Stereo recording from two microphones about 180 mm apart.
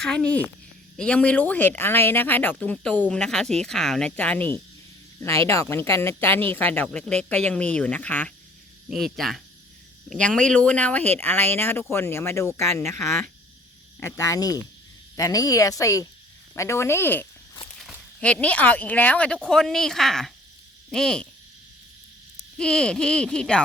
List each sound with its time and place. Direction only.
0.0 s a woman's voice: 5° left (ahead or behind)
17.7 s speech: centre (ahead or behind)
22.5 s speech: 5° left (ahead or behind)